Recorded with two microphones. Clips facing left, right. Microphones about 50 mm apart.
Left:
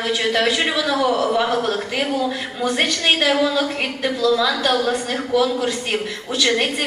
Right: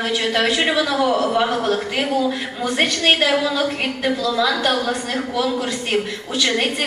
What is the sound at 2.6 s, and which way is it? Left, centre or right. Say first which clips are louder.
A woman's voice: right 1 dB; centre.